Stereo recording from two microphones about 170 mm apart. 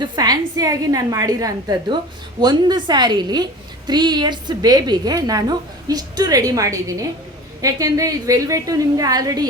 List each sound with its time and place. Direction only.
0.0 s a woman's voice: 20° right (ahead or behind)